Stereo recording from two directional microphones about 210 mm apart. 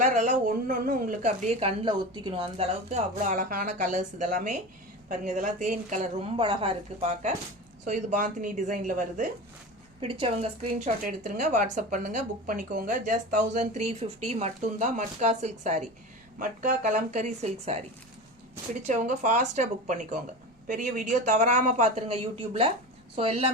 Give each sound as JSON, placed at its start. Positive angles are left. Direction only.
{"t": 0.0, "sound": "speech", "side_deg": -35}
{"t": 10.0, "sound": "speech", "side_deg": -25}
{"t": 18.9, "sound": "a woman's voice", "side_deg": -35}